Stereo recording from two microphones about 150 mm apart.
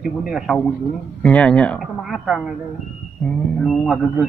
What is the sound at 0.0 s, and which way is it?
A man's voice, 5° right (ahead or behind).